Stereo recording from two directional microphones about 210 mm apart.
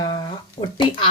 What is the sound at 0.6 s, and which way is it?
Speech, 30° left (ahead or behind).